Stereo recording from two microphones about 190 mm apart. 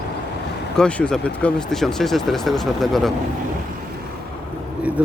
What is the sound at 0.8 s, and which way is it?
Speech, 5° left (ahead or behind).